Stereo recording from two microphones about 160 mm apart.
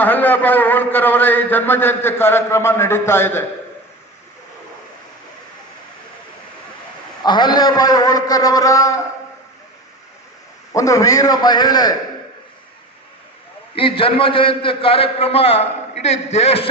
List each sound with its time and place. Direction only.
0.0 s a man's voice: 10° left (ahead or behind)
7.3 s a man's voice: 25° left (ahead or behind)
10.8 s a man's voice: 20° left (ahead or behind)
13.7 s a man's voice: 35° left (ahead or behind)